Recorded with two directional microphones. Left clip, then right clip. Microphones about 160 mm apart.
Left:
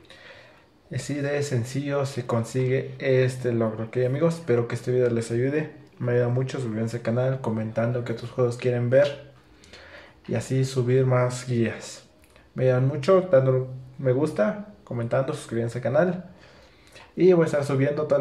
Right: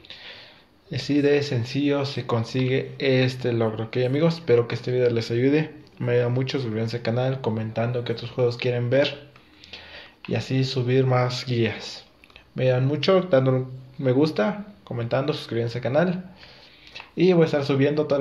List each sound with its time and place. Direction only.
0.9 s speech: 25° right (ahead or behind)
4.2 s speech: 20° right (ahead or behind)